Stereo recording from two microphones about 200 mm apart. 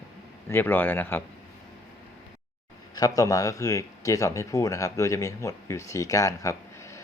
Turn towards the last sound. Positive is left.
turn(degrees=15)  # may be behind; listen again after turning